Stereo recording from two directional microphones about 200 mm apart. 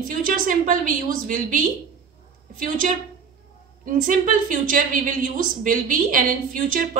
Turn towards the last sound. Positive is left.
turn(degrees=-45)  # may be behind; listen again after turning